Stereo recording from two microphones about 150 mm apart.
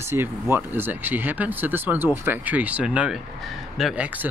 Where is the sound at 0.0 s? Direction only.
15° right (ahead or behind).